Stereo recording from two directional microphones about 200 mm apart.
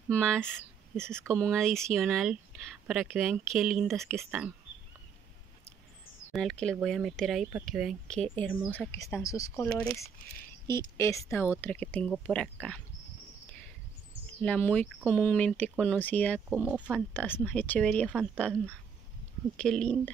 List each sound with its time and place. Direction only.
0.1 s speech: 5° left (ahead or behind)
0.4 s speech: 10° right (ahead or behind)
1.2 s speech: 5° left (ahead or behind)
6.3 s speech: 5° left (ahead or behind)
14.4 s speech: 5° left (ahead or behind)
16.9 s speech: 10° left (ahead or behind)